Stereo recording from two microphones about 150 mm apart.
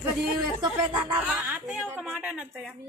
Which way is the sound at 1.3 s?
10° right (ahead or behind).